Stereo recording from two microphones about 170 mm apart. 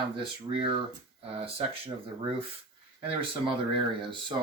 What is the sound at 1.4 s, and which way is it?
Speech, 30° right (ahead or behind).